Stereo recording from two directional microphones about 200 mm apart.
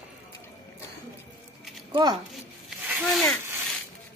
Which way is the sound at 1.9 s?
20° right (ahead or behind).